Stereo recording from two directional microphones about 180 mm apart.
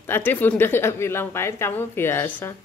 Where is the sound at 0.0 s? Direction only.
10° left (ahead or behind).